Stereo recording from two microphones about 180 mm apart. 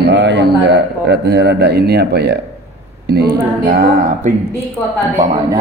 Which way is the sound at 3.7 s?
50° right (ahead or behind).